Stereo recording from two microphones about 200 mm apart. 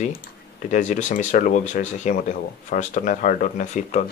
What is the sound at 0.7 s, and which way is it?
Speech, 40° left (ahead or behind).